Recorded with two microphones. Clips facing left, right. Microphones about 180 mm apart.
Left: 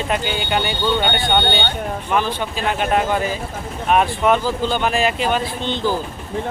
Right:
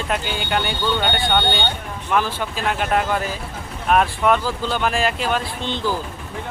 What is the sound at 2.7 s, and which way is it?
Speech, centre (ahead or behind).